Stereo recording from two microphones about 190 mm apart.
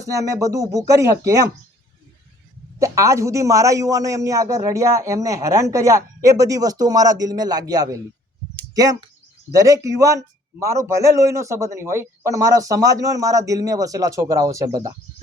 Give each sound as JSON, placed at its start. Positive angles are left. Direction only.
{"t": 0.0, "sound": "a man's voice", "side_deg": -15}
{"t": 2.7, "sound": "a man's voice", "side_deg": -15}